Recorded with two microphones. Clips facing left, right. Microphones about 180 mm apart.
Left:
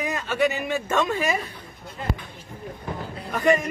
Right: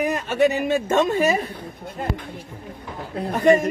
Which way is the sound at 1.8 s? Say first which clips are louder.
Right 5 dB; 55° right (ahead or behind).